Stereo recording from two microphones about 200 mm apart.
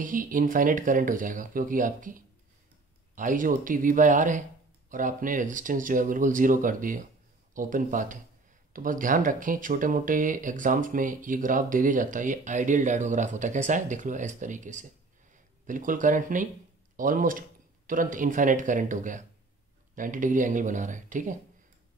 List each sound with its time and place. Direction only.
0.0 s speech: 40° right (ahead or behind)